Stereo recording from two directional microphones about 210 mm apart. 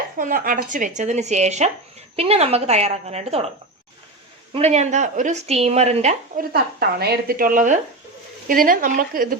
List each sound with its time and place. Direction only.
0.2 s speech: 40° right (ahead or behind)
4.5 s speech: 30° right (ahead or behind)
6.5 s speech: 50° right (ahead or behind)